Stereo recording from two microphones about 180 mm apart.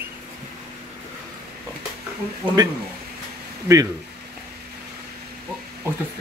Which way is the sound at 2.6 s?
25° right (ahead or behind).